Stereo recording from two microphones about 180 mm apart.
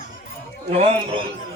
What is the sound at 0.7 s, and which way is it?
Speech, 40° right (ahead or behind).